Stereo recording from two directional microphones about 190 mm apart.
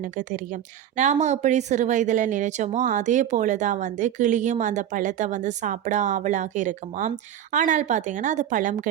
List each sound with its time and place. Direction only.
0.0 s a woman's voice: 40° right (ahead or behind)